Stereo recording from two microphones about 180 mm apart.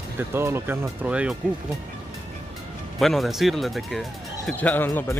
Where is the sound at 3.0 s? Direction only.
Centre (ahead or behind).